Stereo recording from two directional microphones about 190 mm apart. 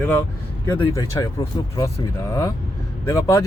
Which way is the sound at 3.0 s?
15° left (ahead or behind).